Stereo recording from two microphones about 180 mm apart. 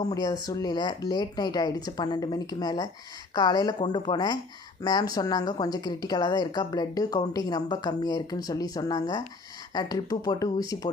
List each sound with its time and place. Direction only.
0.1 s a woman's voice: 20° left (ahead or behind)